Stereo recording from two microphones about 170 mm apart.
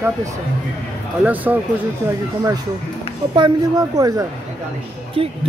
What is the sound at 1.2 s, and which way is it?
Speech, 10° right (ahead or behind).